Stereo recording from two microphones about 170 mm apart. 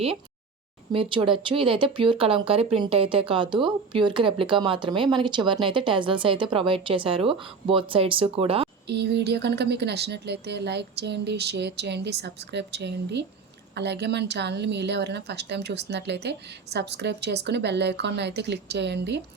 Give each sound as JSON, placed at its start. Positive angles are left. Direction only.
{"t": 0.9, "sound": "speech", "side_deg": -30}
{"t": 8.9, "sound": "a woman's voice", "side_deg": -80}